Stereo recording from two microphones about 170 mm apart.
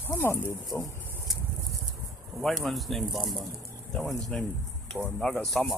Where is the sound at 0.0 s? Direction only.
15° left (ahead or behind).